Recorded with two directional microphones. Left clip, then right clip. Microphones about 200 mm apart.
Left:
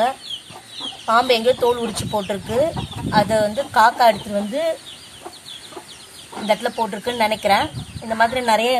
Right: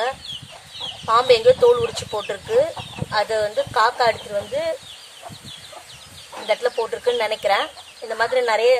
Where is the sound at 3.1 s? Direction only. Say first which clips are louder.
Left 4 dB; 15° right (ahead or behind).